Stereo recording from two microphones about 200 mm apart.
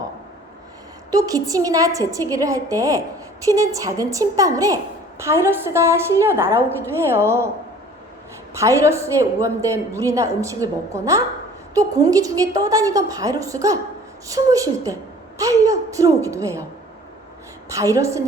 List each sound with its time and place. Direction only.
1.1 s a woman's voice: 15° right (ahead or behind)
8.5 s a woman's voice: 15° right (ahead or behind)
17.7 s a woman's voice: 15° right (ahead or behind)